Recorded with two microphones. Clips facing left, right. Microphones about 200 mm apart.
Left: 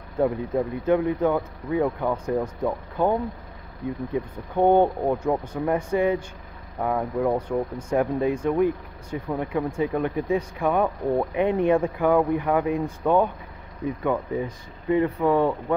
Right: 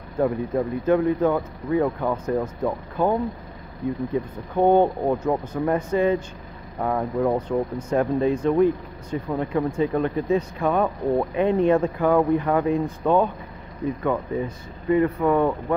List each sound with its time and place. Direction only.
0.2 s speech: 15° left (ahead or behind)
5.0 s speech: 5° left (ahead or behind)